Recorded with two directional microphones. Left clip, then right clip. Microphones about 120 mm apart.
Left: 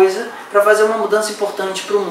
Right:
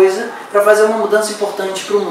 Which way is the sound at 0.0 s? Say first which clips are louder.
Right 2 dB; 5° left (ahead or behind).